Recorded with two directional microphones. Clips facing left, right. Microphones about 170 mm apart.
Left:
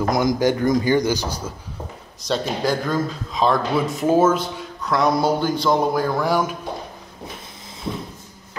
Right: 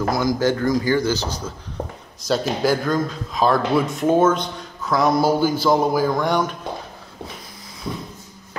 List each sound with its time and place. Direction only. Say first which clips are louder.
0.1 s a man's voice: left 1 dB; 20° left (ahead or behind)
2.2 s speech: right 2 dB; 5° right (ahead or behind)